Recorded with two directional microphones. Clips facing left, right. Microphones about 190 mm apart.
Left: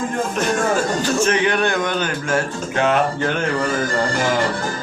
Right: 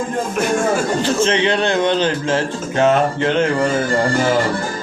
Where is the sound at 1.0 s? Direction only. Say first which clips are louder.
Right 2 dB; 25° right (ahead or behind).